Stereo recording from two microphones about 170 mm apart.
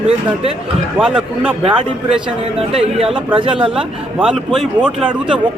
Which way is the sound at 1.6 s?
35° right (ahead or behind).